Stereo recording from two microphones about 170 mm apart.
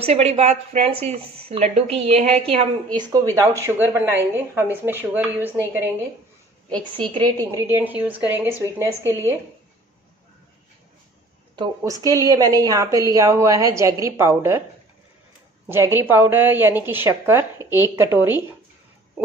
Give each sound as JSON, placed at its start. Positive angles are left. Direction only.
{"t": 0.0, "sound": "speech", "side_deg": -40}
{"t": 3.6, "sound": "a woman's voice", "side_deg": -10}
{"t": 7.0, "sound": "a woman's voice", "side_deg": -25}
{"t": 7.5, "sound": "a woman's voice", "side_deg": -15}
{"t": 11.5, "sound": "a woman's voice", "side_deg": -20}
{"t": 15.6, "sound": "a woman's voice", "side_deg": -15}